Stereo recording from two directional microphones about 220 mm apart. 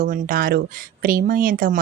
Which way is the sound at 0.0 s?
40° right (ahead or behind).